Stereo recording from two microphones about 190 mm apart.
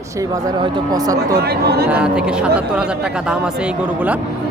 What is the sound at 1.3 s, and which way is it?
Speech, 60° right (ahead or behind).